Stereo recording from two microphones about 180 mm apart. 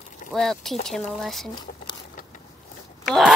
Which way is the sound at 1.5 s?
25° left (ahead or behind).